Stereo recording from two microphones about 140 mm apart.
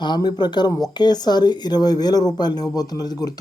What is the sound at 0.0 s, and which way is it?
Speech, 30° left (ahead or behind).